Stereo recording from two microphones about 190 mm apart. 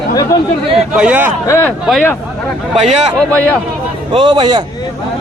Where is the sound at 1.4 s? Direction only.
15° left (ahead or behind).